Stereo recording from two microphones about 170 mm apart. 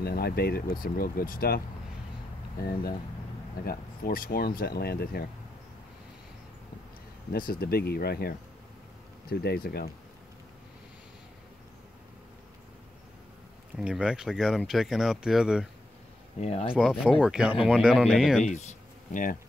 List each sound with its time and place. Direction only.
0.0 s speech: 65° left (ahead or behind)
3.6 s speech: 60° left (ahead or behind)
7.3 s speech: 60° left (ahead or behind)
13.7 s speech: 5° right (ahead or behind)
16.3 s speech: 40° left (ahead or behind)
17.0 s speech: 5° right (ahead or behind)
18.4 s speech: 45° left (ahead or behind)